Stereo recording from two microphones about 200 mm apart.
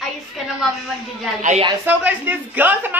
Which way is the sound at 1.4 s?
35° right (ahead or behind).